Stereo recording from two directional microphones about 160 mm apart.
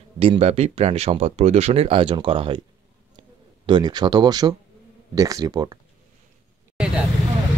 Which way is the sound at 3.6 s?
30° right (ahead or behind).